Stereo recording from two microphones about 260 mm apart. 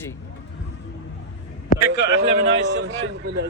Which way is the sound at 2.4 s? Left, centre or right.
Right.